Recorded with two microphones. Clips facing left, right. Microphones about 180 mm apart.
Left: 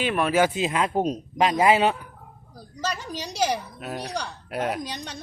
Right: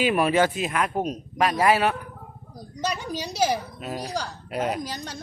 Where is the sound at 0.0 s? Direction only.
5° right (ahead or behind).